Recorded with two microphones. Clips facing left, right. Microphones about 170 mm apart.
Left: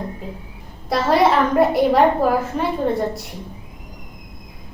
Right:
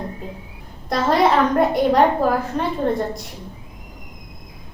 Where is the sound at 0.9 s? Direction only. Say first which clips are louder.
Left 1 dB; 5° left (ahead or behind).